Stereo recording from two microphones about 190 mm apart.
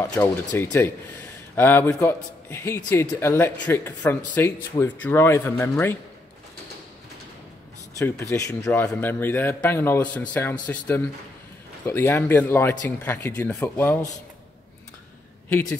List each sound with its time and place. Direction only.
0.0 s speech: 15° left (ahead or behind)
8.0 s speech: 15° left (ahead or behind)
11.8 s speech: 10° left (ahead or behind)